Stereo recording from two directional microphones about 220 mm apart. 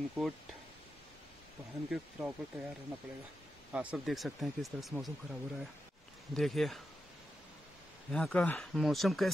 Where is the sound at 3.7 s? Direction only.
5° right (ahead or behind).